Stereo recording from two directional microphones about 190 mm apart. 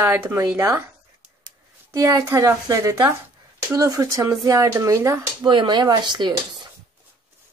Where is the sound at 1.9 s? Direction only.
15° right (ahead or behind).